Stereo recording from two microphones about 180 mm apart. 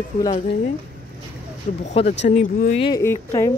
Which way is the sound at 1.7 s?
40° left (ahead or behind).